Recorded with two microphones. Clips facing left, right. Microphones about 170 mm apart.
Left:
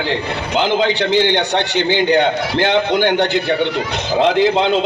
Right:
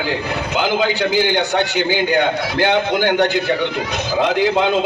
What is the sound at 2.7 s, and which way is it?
Speech, 25° left (ahead or behind).